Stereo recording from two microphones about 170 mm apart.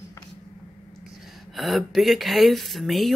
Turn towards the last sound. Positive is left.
turn(degrees=0)  # may be behind; listen again after turning